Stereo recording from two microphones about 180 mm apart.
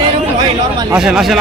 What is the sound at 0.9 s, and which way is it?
Speech, centre (ahead or behind).